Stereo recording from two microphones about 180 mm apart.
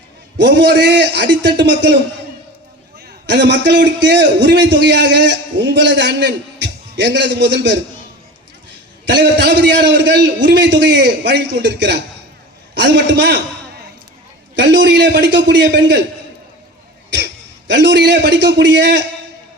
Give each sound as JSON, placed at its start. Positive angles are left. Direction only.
{"t": 0.3, "sound": "a man's voice", "side_deg": -75}
{"t": 3.2, "sound": "a man's voice", "side_deg": -70}
{"t": 9.0, "sound": "a man's voice", "side_deg": -75}
{"t": 14.5, "sound": "a man's voice", "side_deg": -80}
{"t": 17.7, "sound": "a man's voice", "side_deg": -75}